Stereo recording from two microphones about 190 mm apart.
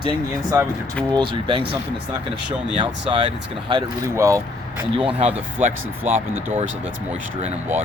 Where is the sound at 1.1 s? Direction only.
25° right (ahead or behind).